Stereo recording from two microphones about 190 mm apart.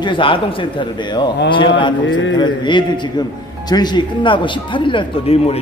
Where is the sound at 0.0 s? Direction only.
25° left (ahead or behind).